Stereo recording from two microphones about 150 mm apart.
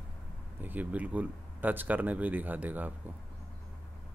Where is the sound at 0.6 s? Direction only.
10° right (ahead or behind).